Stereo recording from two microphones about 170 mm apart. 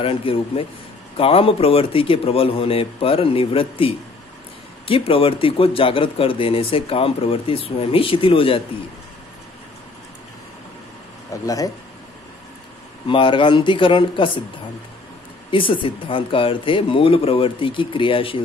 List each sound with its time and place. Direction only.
0.0 s speech: 30° left (ahead or behind)
11.4 s speech: 20° left (ahead or behind)
13.0 s speech: 30° left (ahead or behind)
15.5 s speech: 30° left (ahead or behind)